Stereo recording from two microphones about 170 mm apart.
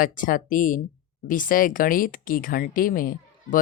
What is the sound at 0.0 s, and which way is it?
Speech, 55° left (ahead or behind).